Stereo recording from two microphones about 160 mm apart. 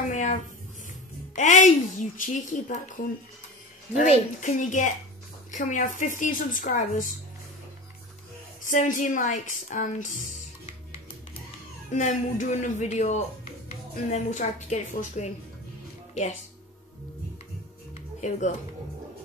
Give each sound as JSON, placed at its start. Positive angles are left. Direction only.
{"t": 0.1, "sound": "a sound", "side_deg": 50}
{"t": 1.3, "sound": "a woman's voice", "side_deg": 50}
{"t": 8.6, "sound": "a woman's voice", "side_deg": 50}
{"t": 11.9, "sound": "a woman's voice", "side_deg": 50}